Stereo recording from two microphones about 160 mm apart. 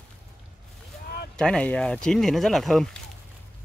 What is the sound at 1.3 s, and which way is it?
Speech, 5° left (ahead or behind).